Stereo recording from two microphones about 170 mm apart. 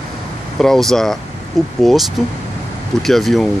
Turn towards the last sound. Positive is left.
turn(degrees=0)  # may be behind; listen again after turning